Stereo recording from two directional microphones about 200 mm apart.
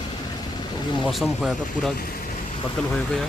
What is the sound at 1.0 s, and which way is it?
A man's voice, centre (ahead or behind).